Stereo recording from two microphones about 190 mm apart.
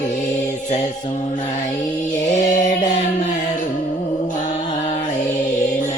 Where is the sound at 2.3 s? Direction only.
40° left (ahead or behind).